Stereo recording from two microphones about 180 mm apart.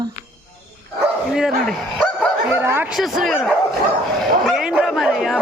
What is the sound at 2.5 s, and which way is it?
Speech, 10° right (ahead or behind).